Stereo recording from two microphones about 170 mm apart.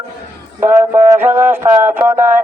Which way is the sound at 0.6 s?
15° right (ahead or behind).